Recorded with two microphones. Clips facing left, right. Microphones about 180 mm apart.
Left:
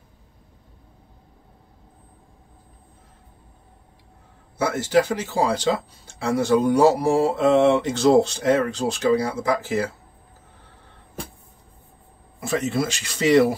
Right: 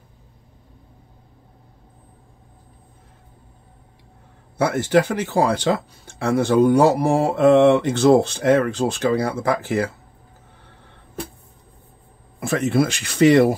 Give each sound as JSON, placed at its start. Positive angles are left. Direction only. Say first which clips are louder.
{"t": 4.6, "sound": "speech", "louder": "right 2 dB", "side_deg": -55}
{"t": 12.4, "sound": "speech", "louder": "right 4 dB", "side_deg": -60}